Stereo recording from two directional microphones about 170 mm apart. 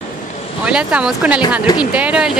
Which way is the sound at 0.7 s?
5° right (ahead or behind).